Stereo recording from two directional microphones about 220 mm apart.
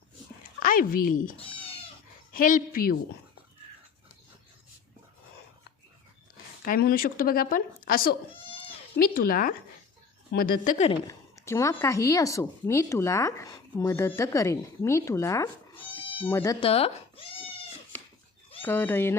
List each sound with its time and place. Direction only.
0.6 s speech: 40° left (ahead or behind)
6.7 s speech: 45° left (ahead or behind)
11.3 s speech: 10° left (ahead or behind)
18.6 s speech: 10° left (ahead or behind)